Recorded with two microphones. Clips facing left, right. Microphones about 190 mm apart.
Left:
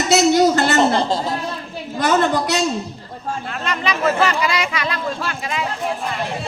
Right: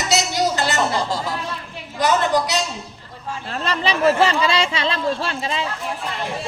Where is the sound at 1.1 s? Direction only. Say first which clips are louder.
Left 3 dB; 25° left (ahead or behind).